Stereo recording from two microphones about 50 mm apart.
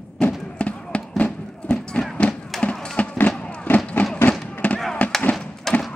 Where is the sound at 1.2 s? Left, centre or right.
Centre.